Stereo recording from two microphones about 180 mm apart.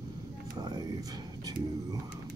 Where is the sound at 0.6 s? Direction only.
25° right (ahead or behind).